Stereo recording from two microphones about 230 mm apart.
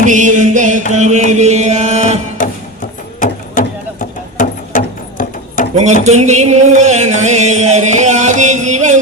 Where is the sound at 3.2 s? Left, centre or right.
Left.